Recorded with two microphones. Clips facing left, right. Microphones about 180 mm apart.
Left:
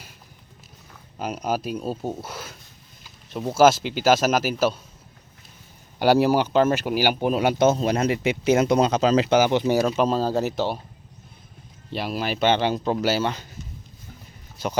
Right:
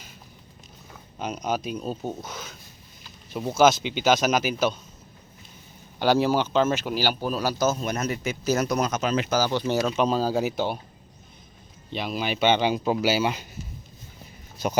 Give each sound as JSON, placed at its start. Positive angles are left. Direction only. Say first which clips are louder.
{"t": 1.2, "sound": "speech", "louder": "left 2 dB", "side_deg": 5}
{"t": 3.6, "sound": "speech", "louder": "left 2 dB", "side_deg": 5}
{"t": 6.0, "sound": "speech", "louder": "left 3 dB", "side_deg": 10}
{"t": 9.7, "sound": "speech", "louder": "left 2 dB", "side_deg": 5}
{"t": 11.9, "sound": "speech", "louder": "left 2 dB", "side_deg": 5}